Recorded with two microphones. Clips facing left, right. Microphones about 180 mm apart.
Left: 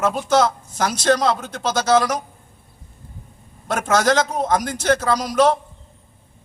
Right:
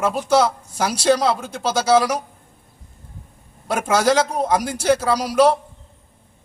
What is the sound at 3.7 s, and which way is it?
A man's voice, 10° right (ahead or behind).